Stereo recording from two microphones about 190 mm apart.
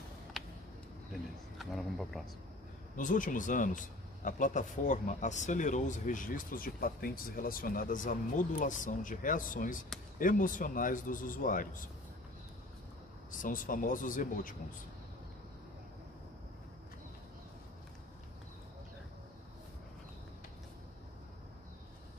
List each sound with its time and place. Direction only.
0.3 s a sound: centre (ahead or behind)
1.6 s speech: centre (ahead or behind)
3.0 s a man's voice: 45° left (ahead or behind)
13.4 s a man's voice: 45° left (ahead or behind)